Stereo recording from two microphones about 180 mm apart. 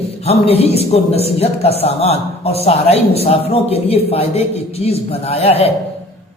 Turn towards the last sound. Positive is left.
turn(degrees=35)  # may be behind; listen again after turning